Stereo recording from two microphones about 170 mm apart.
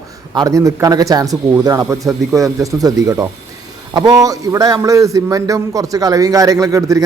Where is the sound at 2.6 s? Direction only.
20° right (ahead or behind).